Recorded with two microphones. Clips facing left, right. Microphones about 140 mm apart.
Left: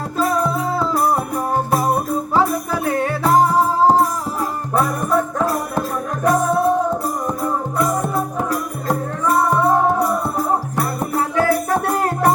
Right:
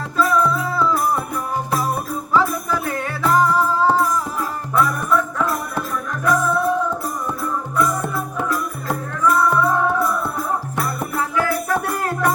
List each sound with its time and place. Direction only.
0.2 s music: 40° left (ahead or behind)
2.3 s music: 45° left (ahead or behind)
11.7 s music: 30° left (ahead or behind)